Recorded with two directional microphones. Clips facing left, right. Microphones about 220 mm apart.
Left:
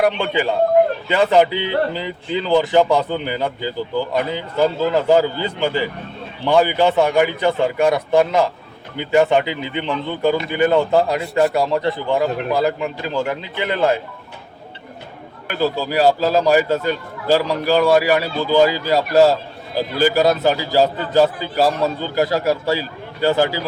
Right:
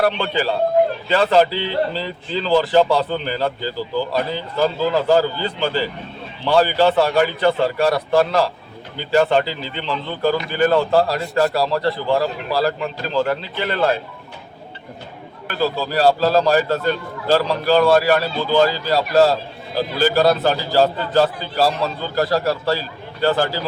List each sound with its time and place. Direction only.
0.0 s a man's voice: 15° left (ahead or behind)
15.4 s a man's voice: 15° left (ahead or behind)